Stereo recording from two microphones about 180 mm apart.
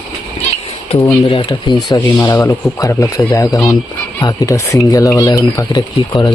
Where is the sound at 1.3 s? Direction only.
25° left (ahead or behind).